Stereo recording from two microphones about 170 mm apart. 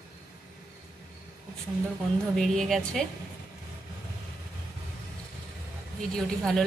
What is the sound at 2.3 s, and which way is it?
Speech, centre (ahead or behind).